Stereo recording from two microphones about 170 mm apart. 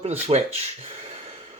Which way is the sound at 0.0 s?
40° right (ahead or behind).